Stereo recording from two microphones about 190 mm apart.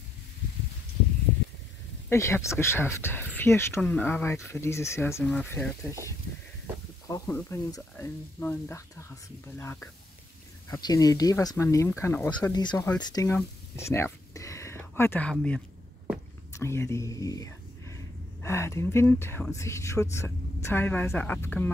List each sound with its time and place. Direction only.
2.0 s speech: 15° left (ahead or behind)
7.1 s speech: 15° left (ahead or behind)